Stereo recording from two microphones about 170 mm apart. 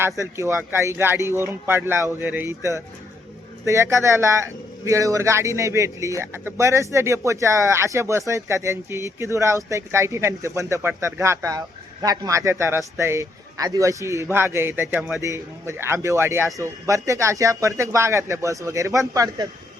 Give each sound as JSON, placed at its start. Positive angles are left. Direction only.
{"t": 0.0, "sound": "a man's voice", "side_deg": -15}